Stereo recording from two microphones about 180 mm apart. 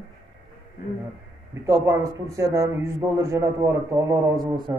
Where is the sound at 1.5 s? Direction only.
15° right (ahead or behind).